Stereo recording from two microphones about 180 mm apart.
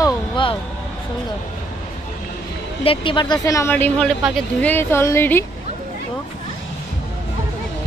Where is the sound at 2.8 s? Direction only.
25° left (ahead or behind).